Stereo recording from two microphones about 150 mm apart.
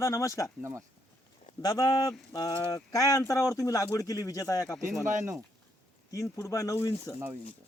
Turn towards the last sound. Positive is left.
turn(degrees=20)  # may be behind; listen again after turning